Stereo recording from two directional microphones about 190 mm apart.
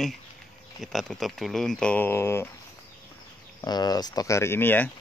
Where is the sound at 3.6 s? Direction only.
20° left (ahead or behind).